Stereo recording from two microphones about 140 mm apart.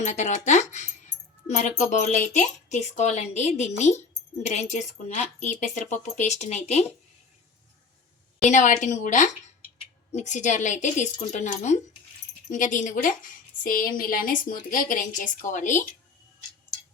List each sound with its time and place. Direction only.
0.0 s speech: 60° left (ahead or behind)
8.4 s speech: 60° left (ahead or behind)
12.5 s a woman's voice: 70° left (ahead or behind); by 14.3 s 85° left
14.4 s a woman's voice: 75° left (ahead or behind)